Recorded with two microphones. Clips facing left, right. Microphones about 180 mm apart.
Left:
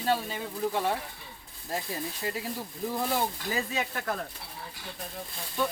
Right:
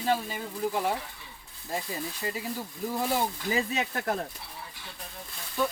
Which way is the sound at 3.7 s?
30° right (ahead or behind).